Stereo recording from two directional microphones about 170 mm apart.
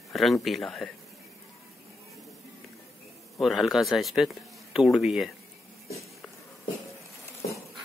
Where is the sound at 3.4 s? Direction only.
Centre (ahead or behind).